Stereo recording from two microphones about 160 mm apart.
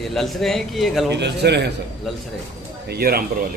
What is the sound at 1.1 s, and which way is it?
Speech, 90° right.